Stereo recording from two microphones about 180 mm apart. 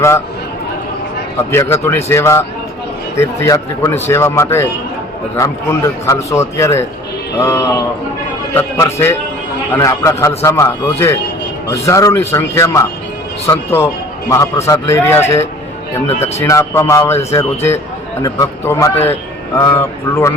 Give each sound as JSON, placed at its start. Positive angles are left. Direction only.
{"t": 1.7, "sound": "a man's voice", "side_deg": 15}
{"t": 16.4, "sound": "a man's voice", "side_deg": 15}